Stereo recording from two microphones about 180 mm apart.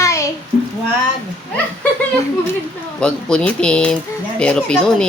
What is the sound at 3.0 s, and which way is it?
Speech, 5° left (ahead or behind).